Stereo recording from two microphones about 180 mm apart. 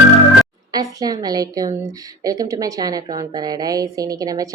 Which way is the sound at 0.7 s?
20° right (ahead or behind).